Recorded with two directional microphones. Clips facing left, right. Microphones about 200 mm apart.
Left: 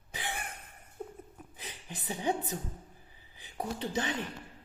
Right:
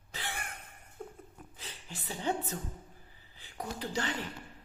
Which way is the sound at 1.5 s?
15° left (ahead or behind).